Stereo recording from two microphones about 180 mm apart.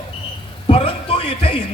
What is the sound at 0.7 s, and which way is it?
Speech, 30° left (ahead or behind).